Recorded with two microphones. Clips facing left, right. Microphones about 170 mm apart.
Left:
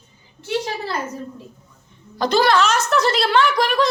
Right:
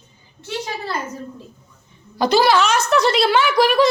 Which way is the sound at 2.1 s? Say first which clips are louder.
Right 1 dB; 5° right (ahead or behind).